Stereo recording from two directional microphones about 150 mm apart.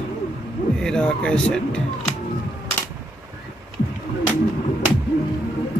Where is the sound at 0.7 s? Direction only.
5° left (ahead or behind).